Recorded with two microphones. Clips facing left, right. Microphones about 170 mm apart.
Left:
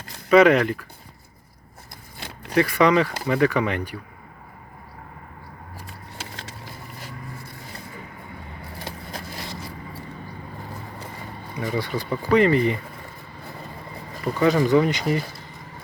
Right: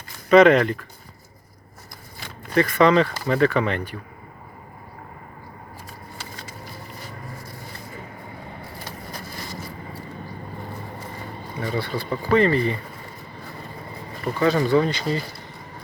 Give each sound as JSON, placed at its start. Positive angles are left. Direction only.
{"t": 0.3, "sound": "speech", "side_deg": 5}
{"t": 2.5, "sound": "speech", "side_deg": 10}
{"t": 11.6, "sound": "speech", "side_deg": 15}
{"t": 14.3, "sound": "speech", "side_deg": 15}